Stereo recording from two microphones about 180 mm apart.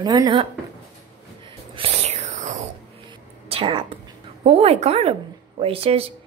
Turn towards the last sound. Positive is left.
turn(degrees=-30)  # may be behind; listen again after turning